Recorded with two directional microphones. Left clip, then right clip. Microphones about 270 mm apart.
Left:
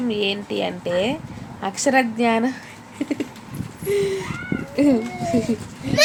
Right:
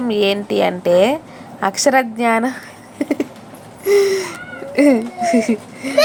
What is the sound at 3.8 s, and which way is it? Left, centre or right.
Gasp, centre.